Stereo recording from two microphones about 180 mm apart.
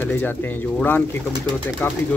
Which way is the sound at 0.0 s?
10° left (ahead or behind).